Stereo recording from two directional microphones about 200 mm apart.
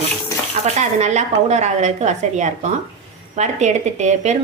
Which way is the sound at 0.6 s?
35° right (ahead or behind).